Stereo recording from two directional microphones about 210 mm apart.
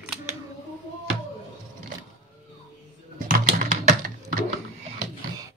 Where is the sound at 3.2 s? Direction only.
40° right (ahead or behind).